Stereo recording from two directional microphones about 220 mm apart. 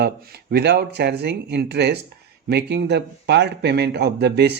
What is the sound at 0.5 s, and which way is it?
A man's voice, 45° right (ahead or behind).